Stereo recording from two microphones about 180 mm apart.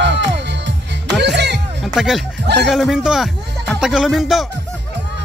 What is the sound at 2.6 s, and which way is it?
Speech, centre (ahead or behind).